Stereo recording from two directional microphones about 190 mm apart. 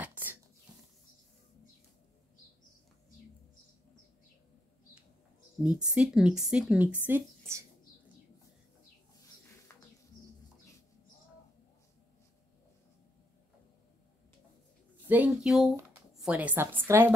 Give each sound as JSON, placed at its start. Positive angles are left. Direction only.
{"t": 0.0, "sound": "a sound", "side_deg": -10}
{"t": 5.6, "sound": "a woman's voice", "side_deg": -5}
{"t": 15.0, "sound": "a woman's voice", "side_deg": -5}